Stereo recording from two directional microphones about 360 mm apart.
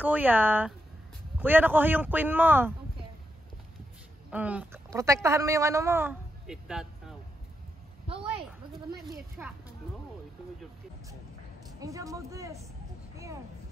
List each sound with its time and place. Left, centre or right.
0.0 s a man's voice: centre
4.3 s a woman's voice: centre
8.1 s a sound: centre
9.4 s a man's voice: centre
11.8 s speech: centre